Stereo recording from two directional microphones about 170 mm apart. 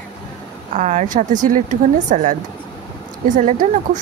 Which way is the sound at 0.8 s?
45° right (ahead or behind).